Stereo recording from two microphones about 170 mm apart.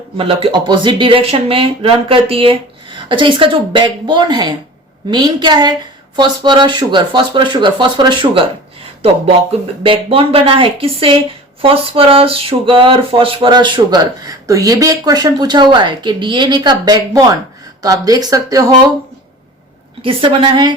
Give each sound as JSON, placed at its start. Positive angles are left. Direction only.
{"t": 0.2, "sound": "speech", "side_deg": -35}
{"t": 20.0, "sound": "a woman's voice", "side_deg": -30}